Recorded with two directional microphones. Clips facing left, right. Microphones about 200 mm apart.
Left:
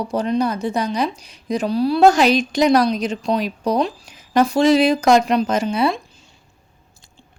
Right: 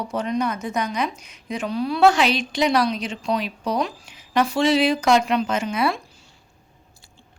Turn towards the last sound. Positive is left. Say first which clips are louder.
# left 4 dB
turn(degrees=30)  # may be behind; listen again after turning